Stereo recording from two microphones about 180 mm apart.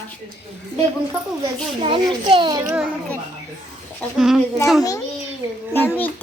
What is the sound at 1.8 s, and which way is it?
Speech, 30° right (ahead or behind).